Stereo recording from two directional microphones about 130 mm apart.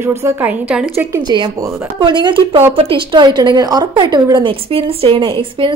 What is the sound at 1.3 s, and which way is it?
A woman's voice, 35° right (ahead or behind).